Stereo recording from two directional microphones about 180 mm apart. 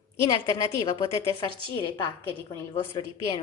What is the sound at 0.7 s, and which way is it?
Speech, 20° left (ahead or behind).